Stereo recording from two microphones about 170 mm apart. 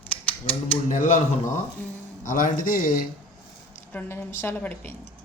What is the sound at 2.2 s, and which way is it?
Speech, 50° left (ahead or behind).